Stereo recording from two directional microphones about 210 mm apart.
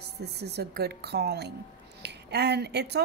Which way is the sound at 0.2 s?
50° right (ahead or behind).